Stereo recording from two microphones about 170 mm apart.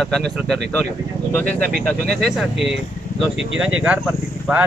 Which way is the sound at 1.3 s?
5° left (ahead or behind).